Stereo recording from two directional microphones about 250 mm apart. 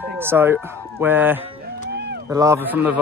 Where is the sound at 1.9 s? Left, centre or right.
Right.